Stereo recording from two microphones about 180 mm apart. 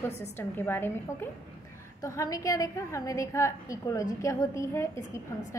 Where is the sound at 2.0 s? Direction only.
20° left (ahead or behind).